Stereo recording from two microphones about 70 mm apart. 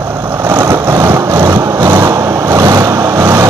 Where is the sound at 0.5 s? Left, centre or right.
Right.